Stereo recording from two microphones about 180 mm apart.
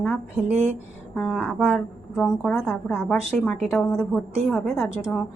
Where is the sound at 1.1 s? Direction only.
5° left (ahead or behind).